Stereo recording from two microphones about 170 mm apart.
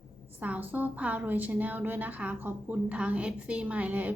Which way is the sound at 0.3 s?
10° right (ahead or behind).